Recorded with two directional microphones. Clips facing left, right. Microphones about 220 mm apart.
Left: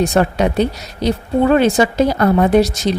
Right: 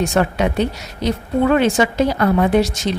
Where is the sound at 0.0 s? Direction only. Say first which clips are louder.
Left 3 dB; 35° left (ahead or behind).